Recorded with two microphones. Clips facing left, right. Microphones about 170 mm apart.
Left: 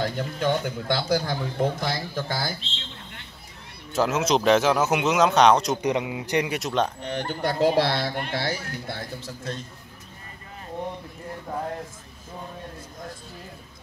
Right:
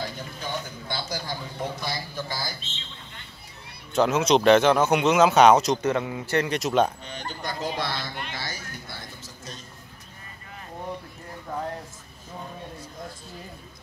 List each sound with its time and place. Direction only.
0.0 s speech: 60° left (ahead or behind)
3.9 s speech: centre (ahead or behind)
5.8 s a man's voice: 15° left (ahead or behind)
6.6 s speech: 5° right (ahead or behind)
7.0 s speech: 65° left (ahead or behind)